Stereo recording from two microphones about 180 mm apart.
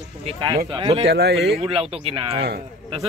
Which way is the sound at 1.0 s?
65° right (ahead or behind).